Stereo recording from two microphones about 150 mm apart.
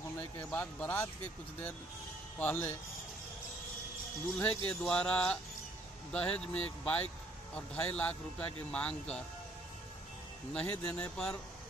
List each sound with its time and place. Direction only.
0.5 s speech: 10° left (ahead or behind)
2.3 s speech: 10° left (ahead or behind)
4.4 s speech: 5° left (ahead or behind)
10.5 s speech: 10° left (ahead or behind)